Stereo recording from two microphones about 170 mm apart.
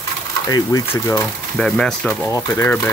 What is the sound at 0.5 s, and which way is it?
Speech, 20° left (ahead or behind).